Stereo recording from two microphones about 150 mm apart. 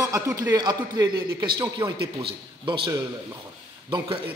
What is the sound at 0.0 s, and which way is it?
A man's voice, 20° right (ahead or behind).